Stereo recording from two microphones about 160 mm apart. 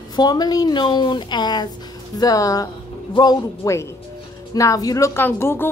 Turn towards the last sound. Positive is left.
turn(degrees=15)  # may be behind; listen again after turning